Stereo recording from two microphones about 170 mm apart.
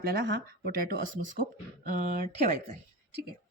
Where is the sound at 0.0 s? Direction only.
60° right (ahead or behind).